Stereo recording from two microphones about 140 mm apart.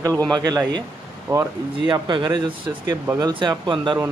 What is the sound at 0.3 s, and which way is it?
Speech, 30° right (ahead or behind).